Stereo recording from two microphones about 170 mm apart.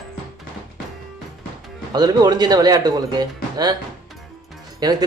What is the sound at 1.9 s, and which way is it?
Speech, 25° right (ahead or behind).